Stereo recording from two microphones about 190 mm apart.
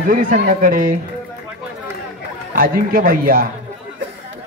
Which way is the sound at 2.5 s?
50° right (ahead or behind).